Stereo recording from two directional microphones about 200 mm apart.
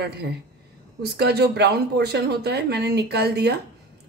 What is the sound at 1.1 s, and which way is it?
Speech, 55° right (ahead or behind).